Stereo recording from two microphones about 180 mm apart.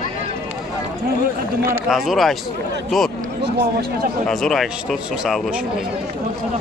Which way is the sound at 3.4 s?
65° right (ahead or behind).